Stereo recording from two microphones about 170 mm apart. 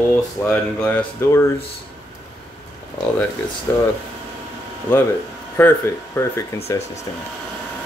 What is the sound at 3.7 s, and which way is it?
Speech, 15° left (ahead or behind).